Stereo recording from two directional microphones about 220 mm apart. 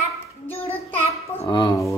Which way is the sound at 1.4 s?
20° left (ahead or behind).